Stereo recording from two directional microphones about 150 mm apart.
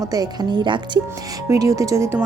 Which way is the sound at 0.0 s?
25° right (ahead or behind).